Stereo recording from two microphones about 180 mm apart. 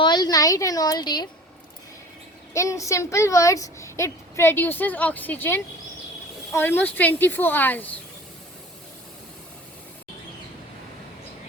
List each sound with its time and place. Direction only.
0.0 s a woman's voice: 25° left (ahead or behind)
2.5 s a woman's voice: 15° left (ahead or behind)